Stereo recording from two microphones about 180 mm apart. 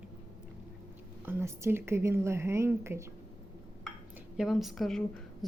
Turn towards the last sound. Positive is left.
turn(degrees=0)  # may be behind; listen again after turning